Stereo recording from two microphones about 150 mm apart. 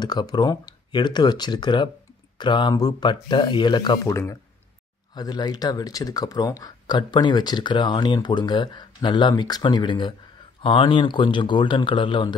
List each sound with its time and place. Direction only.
0.0 s speech: 25° left (ahead or behind)